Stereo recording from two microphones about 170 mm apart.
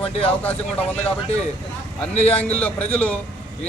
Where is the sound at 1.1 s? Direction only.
35° left (ahead or behind).